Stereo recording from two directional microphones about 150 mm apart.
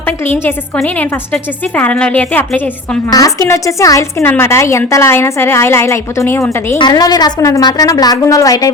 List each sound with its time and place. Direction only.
0.8 s a woman's voice: 10° left (ahead or behind)
3.1 s a woman's voice: 20° left (ahead or behind)
6.7 s a woman's voice: 30° left (ahead or behind)